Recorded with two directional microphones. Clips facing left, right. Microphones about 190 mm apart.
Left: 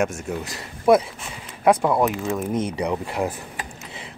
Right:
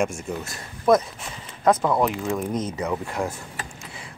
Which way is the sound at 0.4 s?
10° left (ahead or behind).